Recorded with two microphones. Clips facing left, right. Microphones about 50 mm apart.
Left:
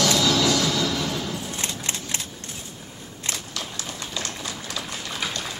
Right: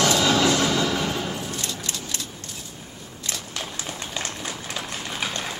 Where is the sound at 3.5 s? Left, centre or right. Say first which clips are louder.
Right 1 dB; right.